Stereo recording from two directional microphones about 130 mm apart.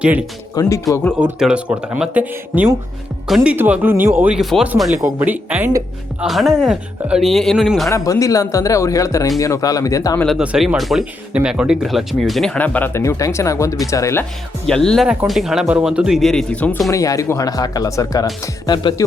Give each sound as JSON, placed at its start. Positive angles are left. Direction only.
{"t": 0.0, "sound": "speech", "side_deg": -10}
{"t": 0.5, "sound": "speech", "side_deg": 30}
{"t": 1.4, "sound": "speech", "side_deg": -10}
{"t": 3.2, "sound": "speech", "side_deg": 0}
{"t": 3.5, "sound": "speech", "side_deg": -10}
{"t": 4.4, "sound": "speech", "side_deg": 0}
{"t": 4.9, "sound": "speech", "side_deg": -15}
{"t": 6.1, "sound": "speech", "side_deg": 0}
{"t": 7.9, "sound": "speech", "side_deg": 25}
{"t": 10.2, "sound": "speech", "side_deg": -5}
{"t": 12.5, "sound": "speech", "side_deg": 10}
{"t": 14.7, "sound": "speech", "side_deg": 5}
{"t": 16.9, "sound": "speech", "side_deg": 25}